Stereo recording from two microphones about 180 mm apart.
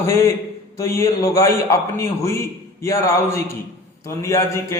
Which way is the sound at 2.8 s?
15° left (ahead or behind).